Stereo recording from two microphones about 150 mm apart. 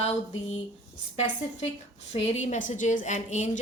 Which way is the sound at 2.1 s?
50° left (ahead or behind).